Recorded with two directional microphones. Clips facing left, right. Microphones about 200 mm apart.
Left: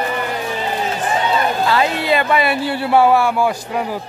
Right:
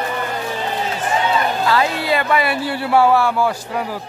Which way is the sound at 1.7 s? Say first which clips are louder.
Left 1 dB; 20° left (ahead or behind).